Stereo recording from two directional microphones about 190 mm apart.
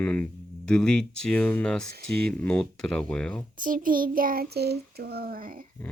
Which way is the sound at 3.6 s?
45° right (ahead or behind).